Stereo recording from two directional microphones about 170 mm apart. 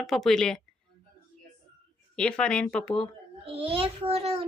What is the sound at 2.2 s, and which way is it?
Speech, 5° left (ahead or behind).